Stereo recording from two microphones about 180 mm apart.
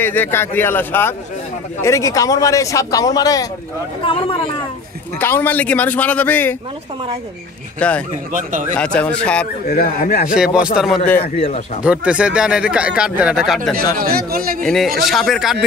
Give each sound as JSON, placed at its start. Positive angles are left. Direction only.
{"t": 0.0, "sound": "a man's voice", "side_deg": 10}
{"t": 4.0, "sound": "speech", "side_deg": 30}
{"t": 5.2, "sound": "a man's voice", "side_deg": 10}
{"t": 7.8, "sound": "a man's voice", "side_deg": 5}
{"t": 8.3, "sound": "speech", "side_deg": -45}
{"t": 8.7, "sound": "speech", "side_deg": 5}
{"t": 9.7, "sound": "speech", "side_deg": 50}
{"t": 10.3, "sound": "speech", "side_deg": -5}
{"t": 11.4, "sound": "speech", "side_deg": 35}
{"t": 11.8, "sound": "speech", "side_deg": -5}
{"t": 13.9, "sound": "speech", "side_deg": -55}
{"t": 14.6, "sound": "speech", "side_deg": 5}